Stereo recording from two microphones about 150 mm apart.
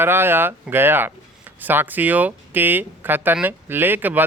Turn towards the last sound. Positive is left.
turn(degrees=-15)  # may be behind; listen again after turning